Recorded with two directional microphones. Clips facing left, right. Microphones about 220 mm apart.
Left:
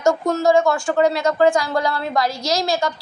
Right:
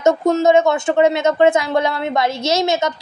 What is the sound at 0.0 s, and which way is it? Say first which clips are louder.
A woman's voice: right 3 dB; 20° right (ahead or behind).